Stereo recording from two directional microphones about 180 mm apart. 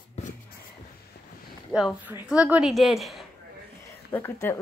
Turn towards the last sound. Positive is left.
turn(degrees=15)  # may be behind; listen again after turning